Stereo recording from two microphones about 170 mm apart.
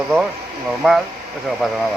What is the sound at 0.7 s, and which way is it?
Speech, centre (ahead or behind).